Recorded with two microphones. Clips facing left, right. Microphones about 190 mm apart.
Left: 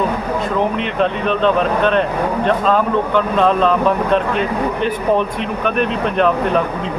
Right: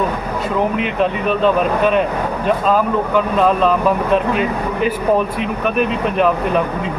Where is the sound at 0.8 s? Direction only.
5° right (ahead or behind).